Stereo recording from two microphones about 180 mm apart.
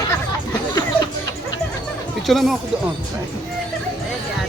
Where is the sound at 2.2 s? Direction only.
Centre (ahead or behind).